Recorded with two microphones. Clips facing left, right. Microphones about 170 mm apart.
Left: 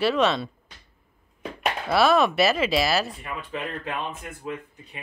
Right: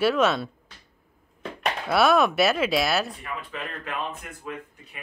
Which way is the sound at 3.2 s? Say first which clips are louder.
Left 2 dB; 25° left (ahead or behind).